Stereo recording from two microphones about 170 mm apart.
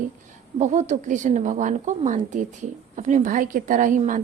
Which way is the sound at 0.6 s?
45° right (ahead or behind).